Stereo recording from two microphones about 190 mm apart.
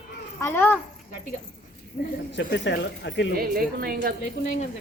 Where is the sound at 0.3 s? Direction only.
15° left (ahead or behind).